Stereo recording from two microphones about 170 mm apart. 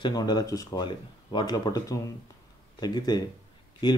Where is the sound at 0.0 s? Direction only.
25° left (ahead or behind).